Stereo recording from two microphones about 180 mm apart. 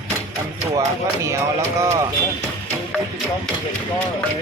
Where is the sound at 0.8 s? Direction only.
15° right (ahead or behind).